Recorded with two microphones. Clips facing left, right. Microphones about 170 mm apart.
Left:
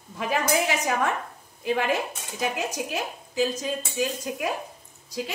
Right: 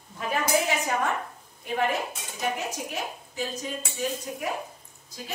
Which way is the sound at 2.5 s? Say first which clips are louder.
Left 3 dB; 90° left.